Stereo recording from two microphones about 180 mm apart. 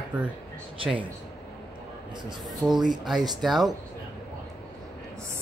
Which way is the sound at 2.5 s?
Centre (ahead or behind).